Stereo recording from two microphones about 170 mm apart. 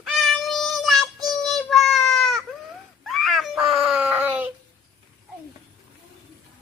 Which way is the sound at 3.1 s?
Centre (ahead or behind).